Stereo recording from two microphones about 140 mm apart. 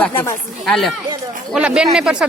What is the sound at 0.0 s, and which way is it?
Speech, 15° left (ahead or behind).